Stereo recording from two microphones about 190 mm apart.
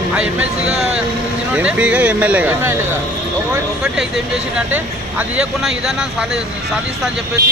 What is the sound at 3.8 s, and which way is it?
Speech, 5° right (ahead or behind).